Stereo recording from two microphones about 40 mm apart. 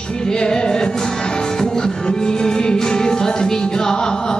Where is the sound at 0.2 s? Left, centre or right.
Centre.